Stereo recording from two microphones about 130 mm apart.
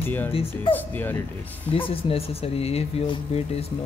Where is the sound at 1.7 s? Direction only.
45° left (ahead or behind).